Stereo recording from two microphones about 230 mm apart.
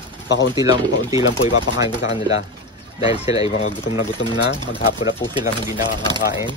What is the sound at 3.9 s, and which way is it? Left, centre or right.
Speech, left.